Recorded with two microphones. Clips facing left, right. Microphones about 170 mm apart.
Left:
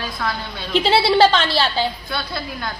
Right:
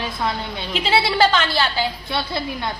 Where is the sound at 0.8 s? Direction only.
25° left (ahead or behind).